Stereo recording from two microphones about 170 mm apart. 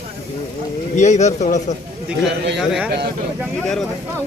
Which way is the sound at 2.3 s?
90° right.